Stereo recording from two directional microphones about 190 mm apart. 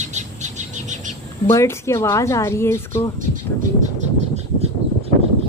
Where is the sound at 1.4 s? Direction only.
15° left (ahead or behind).